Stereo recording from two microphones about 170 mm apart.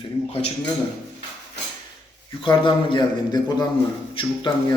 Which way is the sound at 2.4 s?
30° left (ahead or behind).